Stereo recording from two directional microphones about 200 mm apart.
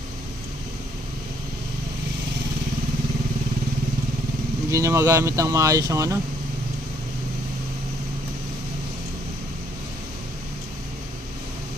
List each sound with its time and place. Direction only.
4.6 s speech: 15° right (ahead or behind)